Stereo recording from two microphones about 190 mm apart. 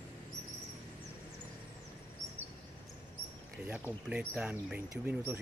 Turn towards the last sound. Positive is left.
turn(degrees=-10)  # may be behind; listen again after turning